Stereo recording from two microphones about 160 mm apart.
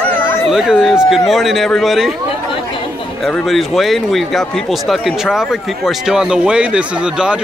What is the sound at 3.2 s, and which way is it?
Speech, centre (ahead or behind).